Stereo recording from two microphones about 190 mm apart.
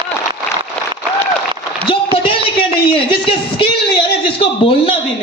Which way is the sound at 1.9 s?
25° left (ahead or behind).